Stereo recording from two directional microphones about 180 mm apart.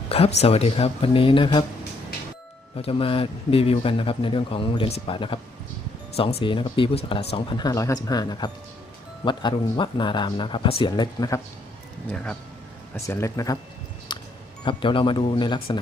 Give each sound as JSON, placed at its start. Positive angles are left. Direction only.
{"t": 0.1, "sound": "speech", "side_deg": 35}
{"t": 2.7, "sound": "speech", "side_deg": 30}
{"t": 12.1, "sound": "speech", "side_deg": 5}
{"t": 14.1, "sound": "music", "side_deg": 25}
{"t": 14.6, "sound": "speech", "side_deg": 30}